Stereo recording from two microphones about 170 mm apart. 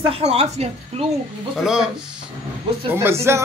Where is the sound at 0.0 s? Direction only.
35° right (ahead or behind).